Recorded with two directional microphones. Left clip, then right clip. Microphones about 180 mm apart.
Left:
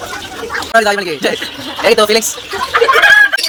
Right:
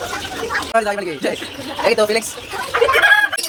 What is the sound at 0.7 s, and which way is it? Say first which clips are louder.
Speech: left 9 dB; 25° left (ahead or behind).